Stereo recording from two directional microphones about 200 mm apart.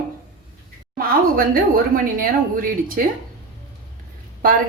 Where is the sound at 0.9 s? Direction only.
45° right (ahead or behind).